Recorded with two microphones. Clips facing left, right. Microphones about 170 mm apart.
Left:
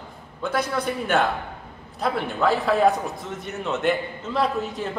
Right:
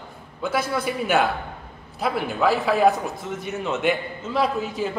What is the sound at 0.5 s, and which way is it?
A man's voice, 5° right (ahead or behind).